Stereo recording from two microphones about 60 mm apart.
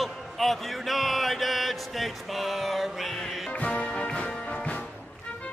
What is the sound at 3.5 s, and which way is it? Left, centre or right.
Music, left.